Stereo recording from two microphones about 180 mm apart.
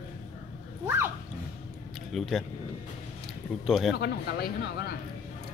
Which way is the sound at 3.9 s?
60° left (ahead or behind).